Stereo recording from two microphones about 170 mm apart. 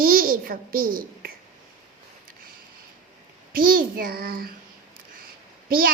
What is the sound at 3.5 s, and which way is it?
A child's voice, 60° right (ahead or behind).